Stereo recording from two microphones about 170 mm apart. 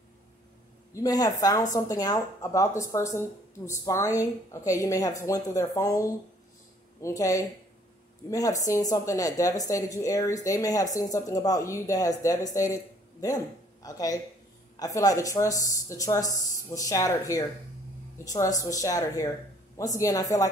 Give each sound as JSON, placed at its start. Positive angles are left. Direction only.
{"t": 0.9, "sound": "speech", "side_deg": 20}